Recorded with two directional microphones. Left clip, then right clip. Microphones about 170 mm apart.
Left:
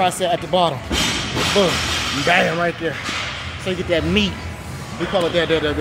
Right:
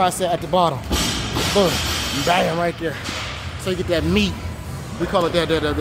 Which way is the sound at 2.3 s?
10° left (ahead or behind).